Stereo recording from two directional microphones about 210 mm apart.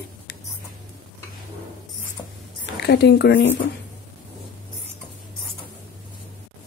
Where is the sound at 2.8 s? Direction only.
50° left (ahead or behind).